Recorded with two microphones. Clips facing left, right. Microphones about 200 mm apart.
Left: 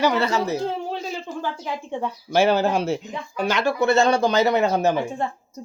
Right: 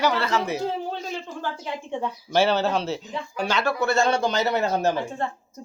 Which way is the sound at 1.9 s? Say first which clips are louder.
Left 1 dB; 10° left (ahead or behind).